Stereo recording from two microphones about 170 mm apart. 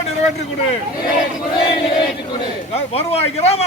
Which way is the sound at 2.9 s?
35° left (ahead or behind).